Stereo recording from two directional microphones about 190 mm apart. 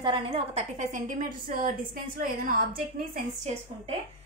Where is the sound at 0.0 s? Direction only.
25° right (ahead or behind); by 2.6 s 45° right (ahead or behind).